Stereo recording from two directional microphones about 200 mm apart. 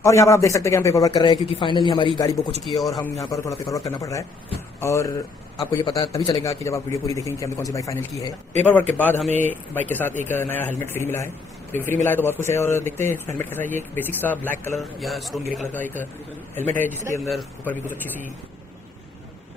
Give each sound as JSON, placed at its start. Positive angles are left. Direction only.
{"t": 0.0, "sound": "a man's voice", "side_deg": 15}
{"t": 2.6, "sound": "speech", "side_deg": 0}
{"t": 3.3, "sound": "a man's voice", "side_deg": 15}
{"t": 17.3, "sound": "a man's voice", "side_deg": 10}